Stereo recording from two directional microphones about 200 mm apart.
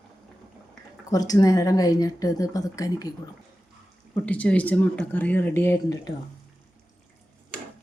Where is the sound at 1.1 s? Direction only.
20° left (ahead or behind).